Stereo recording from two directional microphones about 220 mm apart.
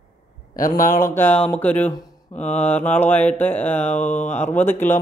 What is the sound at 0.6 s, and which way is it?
Speech, 40° left (ahead or behind).